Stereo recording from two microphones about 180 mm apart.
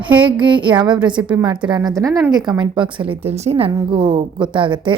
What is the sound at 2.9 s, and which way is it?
A woman's voice, 30° right (ahead or behind).